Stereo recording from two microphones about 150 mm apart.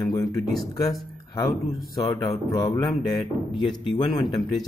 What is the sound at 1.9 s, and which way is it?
Speech, 25° left (ahead or behind).